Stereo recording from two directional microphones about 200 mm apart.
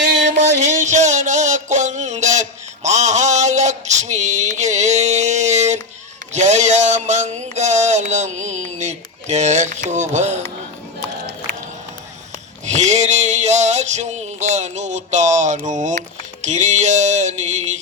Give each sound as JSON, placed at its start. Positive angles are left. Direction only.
{"t": 0.3, "sound": "music", "side_deg": -35}
{"t": 6.3, "sound": "mantra", "side_deg": -35}
{"t": 12.6, "sound": "a sound", "side_deg": -35}